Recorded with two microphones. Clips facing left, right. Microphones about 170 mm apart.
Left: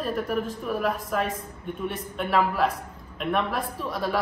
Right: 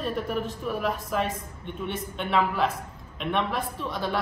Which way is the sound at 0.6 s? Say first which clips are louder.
Left 2 dB; centre (ahead or behind).